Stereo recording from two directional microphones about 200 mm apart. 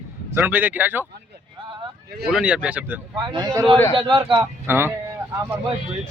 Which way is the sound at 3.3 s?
20° right (ahead or behind).